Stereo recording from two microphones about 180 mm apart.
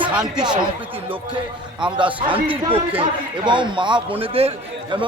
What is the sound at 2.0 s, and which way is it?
A man's voice, 25° right (ahead or behind).